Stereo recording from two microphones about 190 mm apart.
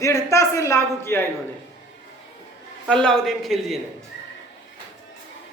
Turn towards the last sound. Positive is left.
turn(degrees=0)  # may be behind; listen again after turning